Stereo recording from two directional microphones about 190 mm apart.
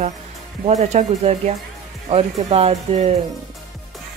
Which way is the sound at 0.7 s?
35° right (ahead or behind).